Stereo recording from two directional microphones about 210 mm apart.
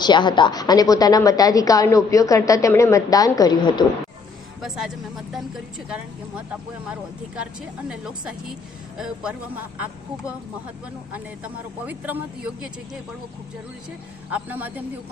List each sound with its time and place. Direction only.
0.0 s a woman's voice: 20° left (ahead or behind)
5.3 s speech: centre (ahead or behind)
11.1 s speech: 5° right (ahead or behind)
14.3 s speech: 5° right (ahead or behind)